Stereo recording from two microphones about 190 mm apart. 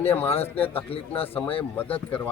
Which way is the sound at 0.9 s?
30° left (ahead or behind).